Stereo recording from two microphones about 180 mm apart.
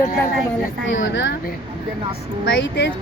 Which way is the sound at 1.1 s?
90° left.